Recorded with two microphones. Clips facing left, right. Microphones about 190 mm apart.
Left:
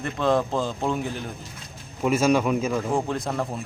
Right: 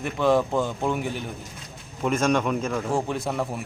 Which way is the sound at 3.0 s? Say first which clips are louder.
Even; 5° right (ahead or behind).